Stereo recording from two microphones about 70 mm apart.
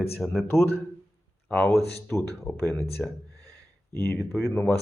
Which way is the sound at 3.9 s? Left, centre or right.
Left.